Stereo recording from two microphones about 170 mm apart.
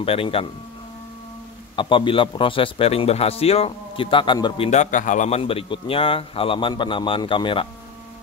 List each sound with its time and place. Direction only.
0.0 s a man's voice: 35° left (ahead or behind)
1.8 s a man's voice: 30° left (ahead or behind)
4.6 s a man's voice: 45° left (ahead or behind); by 7.6 s 30° left (ahead or behind)